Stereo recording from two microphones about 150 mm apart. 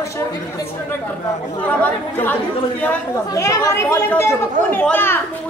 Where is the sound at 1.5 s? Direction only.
10° left (ahead or behind).